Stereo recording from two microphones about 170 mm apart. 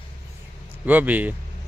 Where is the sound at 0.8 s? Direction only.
10° right (ahead or behind).